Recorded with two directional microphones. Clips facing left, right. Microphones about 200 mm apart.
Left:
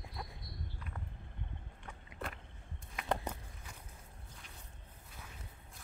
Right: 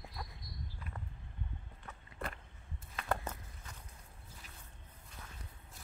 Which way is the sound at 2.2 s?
Centre (ahead or behind).